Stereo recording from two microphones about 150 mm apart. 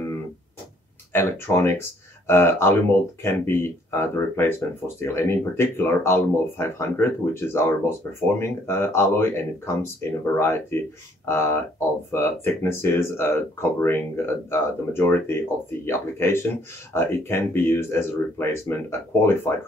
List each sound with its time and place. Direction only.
1.1 s speech: 15° left (ahead or behind)